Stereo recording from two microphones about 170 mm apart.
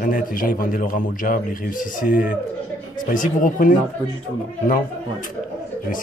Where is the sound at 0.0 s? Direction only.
55° left (ahead or behind).